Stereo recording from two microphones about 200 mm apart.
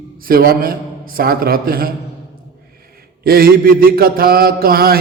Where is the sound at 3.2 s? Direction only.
50° right (ahead or behind).